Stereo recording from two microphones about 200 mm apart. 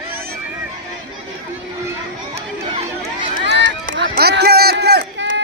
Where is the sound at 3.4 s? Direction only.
60° right (ahead or behind).